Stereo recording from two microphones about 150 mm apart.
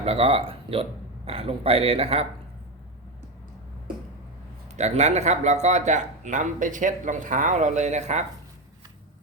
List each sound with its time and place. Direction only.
0.0 s speech: 40° right (ahead or behind)
4.8 s speech: 50° right (ahead or behind)